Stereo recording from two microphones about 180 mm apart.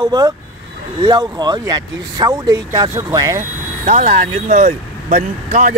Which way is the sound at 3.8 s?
35° right (ahead or behind).